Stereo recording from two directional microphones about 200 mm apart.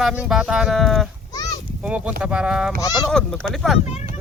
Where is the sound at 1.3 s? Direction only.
20° left (ahead or behind).